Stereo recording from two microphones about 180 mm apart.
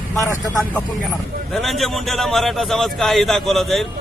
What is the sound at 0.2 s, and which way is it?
Speech, 15° left (ahead or behind).